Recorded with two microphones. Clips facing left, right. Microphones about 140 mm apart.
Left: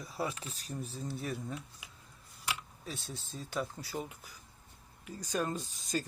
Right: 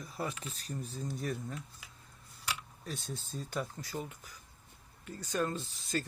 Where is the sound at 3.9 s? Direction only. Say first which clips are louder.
Left 1 dB; 10° left (ahead or behind).